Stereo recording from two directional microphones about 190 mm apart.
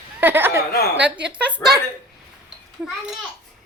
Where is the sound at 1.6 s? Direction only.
10° left (ahead or behind).